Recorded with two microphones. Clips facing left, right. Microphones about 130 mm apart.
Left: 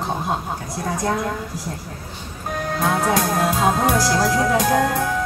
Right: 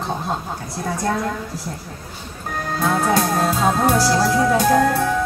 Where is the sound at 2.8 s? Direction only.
15° left (ahead or behind).